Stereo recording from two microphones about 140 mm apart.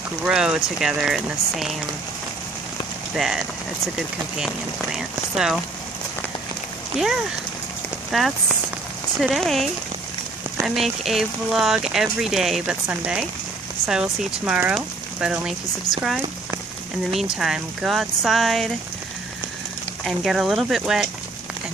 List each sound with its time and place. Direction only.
0.2 s speech: 5° right (ahead or behind)
3.2 s speech: centre (ahead or behind)
4.9 s speech: 5° right (ahead or behind)
8.1 s speech: centre (ahead or behind)
15.9 s speech: 25° left (ahead or behind)
17.2 s speech: 5° right (ahead or behind)
20.1 s speech: centre (ahead or behind)